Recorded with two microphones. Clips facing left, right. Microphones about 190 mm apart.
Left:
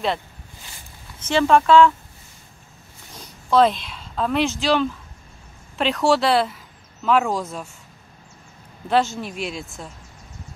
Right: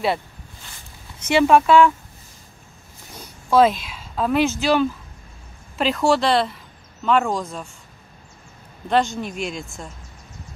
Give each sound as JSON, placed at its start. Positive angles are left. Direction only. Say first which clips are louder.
{"t": 1.2, "sound": "speech", "louder": "right 2 dB", "side_deg": -10}
{"t": 3.4, "sound": "a woman's voice", "louder": "right 1 dB", "side_deg": -5}
{"t": 8.8, "sound": "speech", "louder": "even", "side_deg": 5}